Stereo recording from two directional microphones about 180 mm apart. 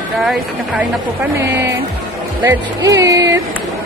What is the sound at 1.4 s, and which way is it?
Speech, 15° right (ahead or behind).